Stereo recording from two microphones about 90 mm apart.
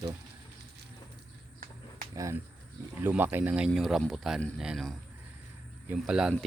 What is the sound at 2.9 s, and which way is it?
Speech, 20° right (ahead or behind).